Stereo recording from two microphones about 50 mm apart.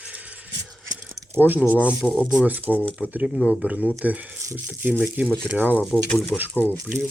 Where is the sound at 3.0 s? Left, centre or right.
Centre.